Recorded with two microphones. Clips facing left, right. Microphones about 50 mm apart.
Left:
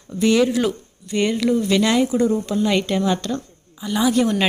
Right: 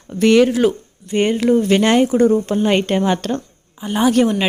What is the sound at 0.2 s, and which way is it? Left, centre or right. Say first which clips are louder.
Speech: right 5 dB; right.